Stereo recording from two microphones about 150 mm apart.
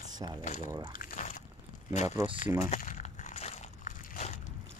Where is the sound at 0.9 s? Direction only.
60° left (ahead or behind).